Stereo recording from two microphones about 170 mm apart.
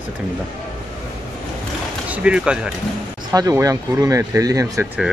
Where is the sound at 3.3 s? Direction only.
20° right (ahead or behind).